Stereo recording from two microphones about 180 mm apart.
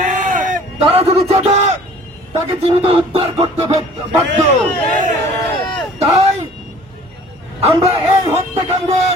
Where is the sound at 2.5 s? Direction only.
35° right (ahead or behind).